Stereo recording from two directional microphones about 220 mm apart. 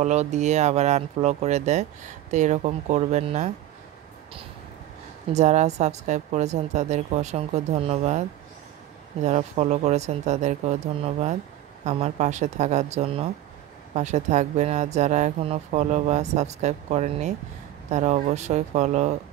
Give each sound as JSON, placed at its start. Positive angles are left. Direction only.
{"t": 0.0, "sound": "speech", "side_deg": -30}
{"t": 5.3, "sound": "speech", "side_deg": -30}